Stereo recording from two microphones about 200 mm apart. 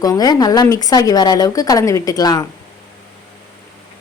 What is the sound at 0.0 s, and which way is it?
Speech, 20° left (ahead or behind).